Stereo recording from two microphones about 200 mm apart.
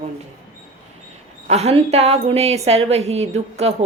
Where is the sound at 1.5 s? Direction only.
35° right (ahead or behind).